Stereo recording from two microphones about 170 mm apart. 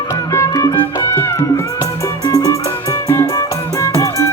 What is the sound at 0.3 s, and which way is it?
Music, 20° left (ahead or behind).